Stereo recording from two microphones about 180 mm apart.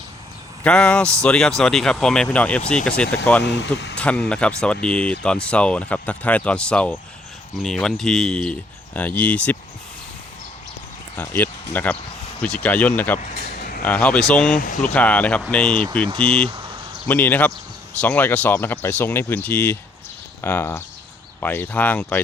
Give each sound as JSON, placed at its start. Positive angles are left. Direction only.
{"t": 0.6, "sound": "speech", "side_deg": 5}
{"t": 3.4, "sound": "speech", "side_deg": 75}
{"t": 3.9, "sound": "speech", "side_deg": 5}
{"t": 11.2, "sound": "speech", "side_deg": 10}
{"t": 13.1, "sound": "a sound", "side_deg": 50}
{"t": 13.8, "sound": "speech", "side_deg": 10}